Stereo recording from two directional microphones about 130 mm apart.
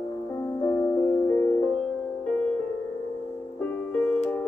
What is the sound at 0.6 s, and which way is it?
Music, 15° left (ahead or behind).